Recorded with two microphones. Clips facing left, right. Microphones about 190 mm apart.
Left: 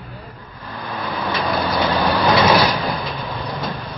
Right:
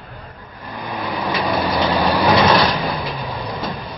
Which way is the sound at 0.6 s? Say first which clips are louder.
Right 1 dB; 15° right (ahead or behind).